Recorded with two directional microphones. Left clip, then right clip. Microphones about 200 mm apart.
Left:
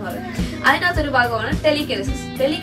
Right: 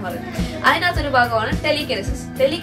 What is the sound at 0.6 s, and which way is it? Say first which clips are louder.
A woman's voice: even; 15° right (ahead or behind).